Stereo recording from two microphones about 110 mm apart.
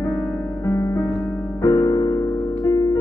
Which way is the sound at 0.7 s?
30° left (ahead or behind).